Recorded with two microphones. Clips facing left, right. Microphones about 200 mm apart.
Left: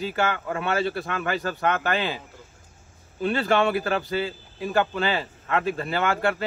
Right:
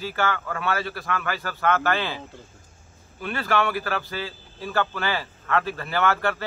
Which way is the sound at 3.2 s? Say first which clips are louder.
Left 3 dB; 25° left (ahead or behind).